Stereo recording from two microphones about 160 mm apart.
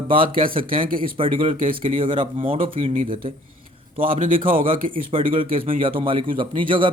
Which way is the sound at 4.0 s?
60° right (ahead or behind).